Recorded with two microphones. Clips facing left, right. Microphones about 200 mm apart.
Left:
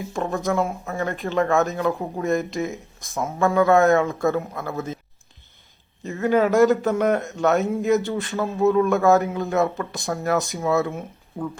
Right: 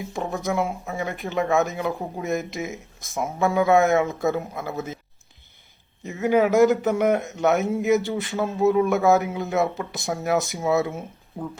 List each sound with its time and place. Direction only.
0.1 s a man's voice: 15° right (ahead or behind)
6.2 s a man's voice: 15° right (ahead or behind)